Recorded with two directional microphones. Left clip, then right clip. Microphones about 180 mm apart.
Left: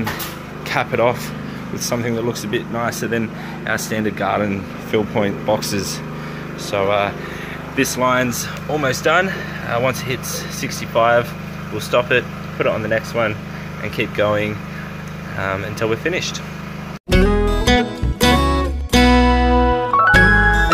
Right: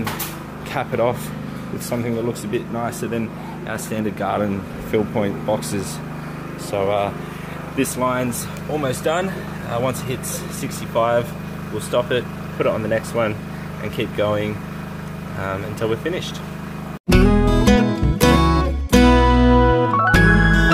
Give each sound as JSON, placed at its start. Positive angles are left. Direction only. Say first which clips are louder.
{"t": 0.7, "sound": "speech", "louder": "left 3 dB", "side_deg": -5}
{"t": 12.5, "sound": "speech", "louder": "left 1 dB", "side_deg": -20}
{"t": 13.9, "sound": "speech", "louder": "left 3 dB", "side_deg": -10}
{"t": 17.1, "sound": "music", "louder": "even", "side_deg": 0}